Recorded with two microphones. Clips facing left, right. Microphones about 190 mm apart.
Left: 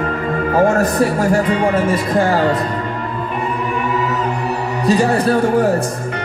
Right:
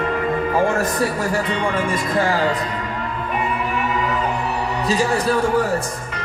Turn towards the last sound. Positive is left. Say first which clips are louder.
# left 5 dB
turn(degrees=60)  # may be behind; listen again after turning